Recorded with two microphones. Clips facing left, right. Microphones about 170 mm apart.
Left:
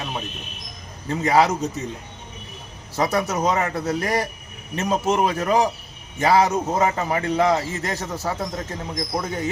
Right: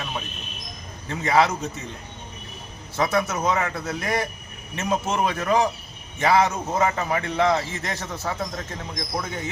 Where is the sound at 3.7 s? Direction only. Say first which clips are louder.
Left 3 dB; 35° left (ahead or behind).